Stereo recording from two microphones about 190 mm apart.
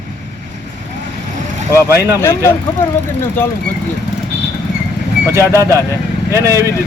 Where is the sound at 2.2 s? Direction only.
15° left (ahead or behind).